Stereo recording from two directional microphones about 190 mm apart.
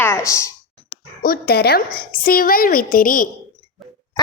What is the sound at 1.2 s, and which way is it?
A woman's voice, 50° left (ahead or behind).